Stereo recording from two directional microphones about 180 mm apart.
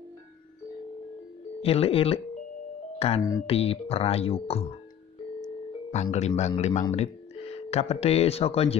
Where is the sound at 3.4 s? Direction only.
35° left (ahead or behind).